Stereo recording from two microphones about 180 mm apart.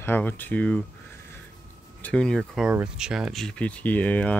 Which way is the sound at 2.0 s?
5° left (ahead or behind).